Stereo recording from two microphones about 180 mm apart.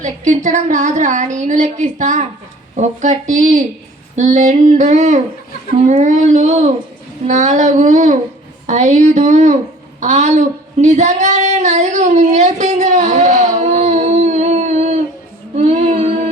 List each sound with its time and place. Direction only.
0.0 s a woman's voice: 40° right (ahead or behind)
15.5 s child singing: 40° right (ahead or behind)